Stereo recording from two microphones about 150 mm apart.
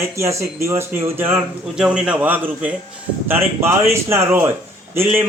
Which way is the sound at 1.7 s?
5° right (ahead or behind).